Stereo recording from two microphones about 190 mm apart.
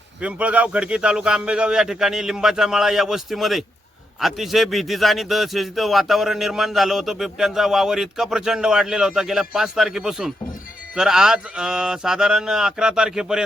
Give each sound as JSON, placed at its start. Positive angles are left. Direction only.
{"t": 0.2, "sound": "a man's voice", "side_deg": -5}